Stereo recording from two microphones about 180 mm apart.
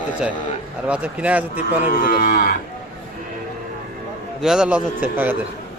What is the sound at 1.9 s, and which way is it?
Moo, 50° left (ahead or behind).